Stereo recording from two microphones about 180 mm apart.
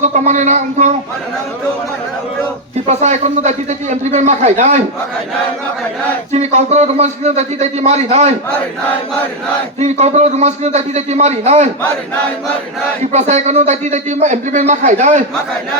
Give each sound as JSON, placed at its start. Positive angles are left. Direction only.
{"t": 0.0, "sound": "speech", "side_deg": -40}
{"t": 2.8, "sound": "speech", "side_deg": -40}
{"t": 6.3, "sound": "speech", "side_deg": -40}
{"t": 9.9, "sound": "speech", "side_deg": -40}
{"t": 13.0, "sound": "speech", "side_deg": -40}